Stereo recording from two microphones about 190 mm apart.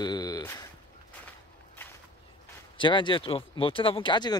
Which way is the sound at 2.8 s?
25° left (ahead or behind).